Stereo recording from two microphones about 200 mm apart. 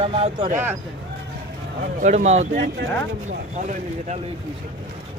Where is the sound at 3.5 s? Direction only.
35° right (ahead or behind).